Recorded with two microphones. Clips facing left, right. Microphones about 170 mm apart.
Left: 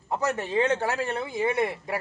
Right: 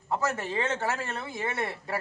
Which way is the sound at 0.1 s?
15° left (ahead or behind).